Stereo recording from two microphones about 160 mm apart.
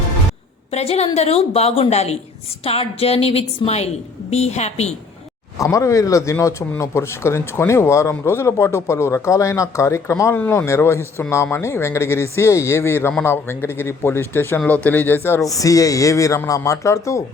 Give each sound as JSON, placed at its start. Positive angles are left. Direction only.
{"t": 0.7, "sound": "a woman's voice", "side_deg": 40}
{"t": 5.5, "sound": "a man's voice", "side_deg": 20}